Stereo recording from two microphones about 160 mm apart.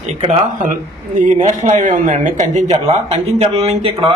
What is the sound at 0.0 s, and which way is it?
Speech, 40° right (ahead or behind).